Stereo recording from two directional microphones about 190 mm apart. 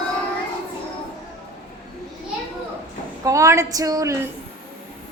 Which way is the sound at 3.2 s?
15° right (ahead or behind).